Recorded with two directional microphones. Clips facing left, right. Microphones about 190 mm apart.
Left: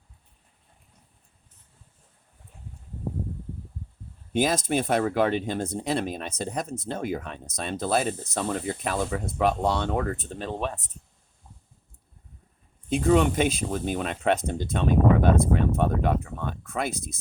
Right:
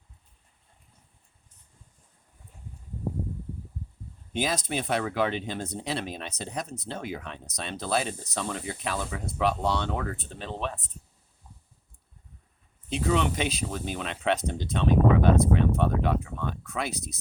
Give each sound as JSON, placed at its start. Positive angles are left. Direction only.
{"t": 4.3, "sound": "speech", "side_deg": 50}
{"t": 12.9, "sound": "speech", "side_deg": 45}